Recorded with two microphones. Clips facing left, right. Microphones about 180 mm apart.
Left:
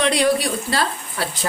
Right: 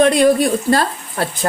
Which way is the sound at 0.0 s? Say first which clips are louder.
Right 6 dB; 50° right (ahead or behind).